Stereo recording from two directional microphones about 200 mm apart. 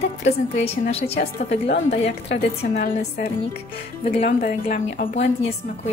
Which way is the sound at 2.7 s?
40° left (ahead or behind).